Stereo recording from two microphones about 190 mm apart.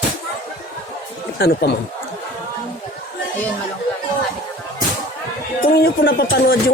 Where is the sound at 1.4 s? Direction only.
60° left (ahead or behind).